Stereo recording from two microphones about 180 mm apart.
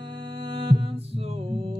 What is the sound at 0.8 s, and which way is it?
Music, 35° right (ahead or behind).